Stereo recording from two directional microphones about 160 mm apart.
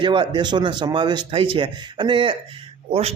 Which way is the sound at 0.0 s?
30° right (ahead or behind).